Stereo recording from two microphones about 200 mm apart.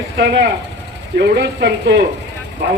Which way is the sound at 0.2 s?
55° right (ahead or behind).